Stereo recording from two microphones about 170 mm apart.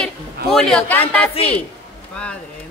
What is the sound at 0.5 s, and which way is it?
Speech, 5° left (ahead or behind).